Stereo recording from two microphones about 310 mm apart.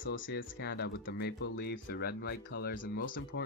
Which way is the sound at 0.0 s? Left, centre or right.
Left.